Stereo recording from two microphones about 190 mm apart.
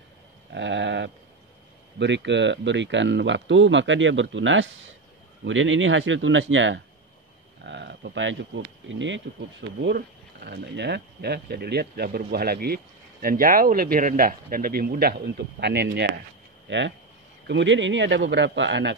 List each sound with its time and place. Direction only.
0.6 s sheep: 70° right (ahead or behind)
2.0 s speech: 70° right (ahead or behind)
7.6 s speech: 65° right (ahead or behind)
16.6 s speech: 70° right (ahead or behind)